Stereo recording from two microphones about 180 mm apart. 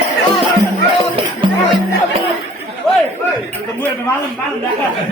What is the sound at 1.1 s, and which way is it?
Music, 30° right (ahead or behind).